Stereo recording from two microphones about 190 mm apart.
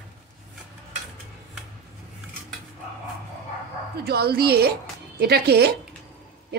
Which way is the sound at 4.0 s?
55° right (ahead or behind).